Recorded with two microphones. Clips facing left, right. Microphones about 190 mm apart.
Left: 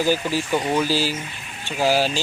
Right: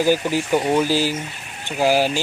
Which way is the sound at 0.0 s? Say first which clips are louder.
Right 3 dB; 15° right (ahead or behind).